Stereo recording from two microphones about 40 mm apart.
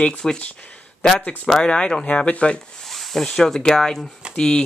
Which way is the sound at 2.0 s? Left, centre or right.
Left.